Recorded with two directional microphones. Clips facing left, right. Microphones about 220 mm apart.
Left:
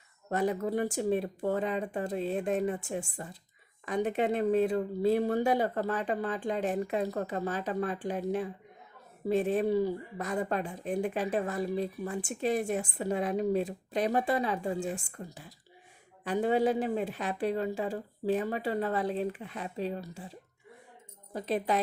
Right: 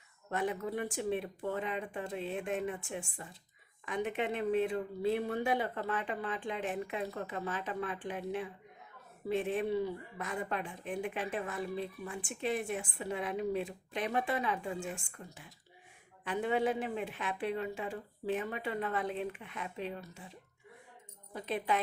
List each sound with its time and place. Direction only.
0.3 s a woman's voice: 40° left (ahead or behind)
21.3 s a woman's voice: 40° left (ahead or behind)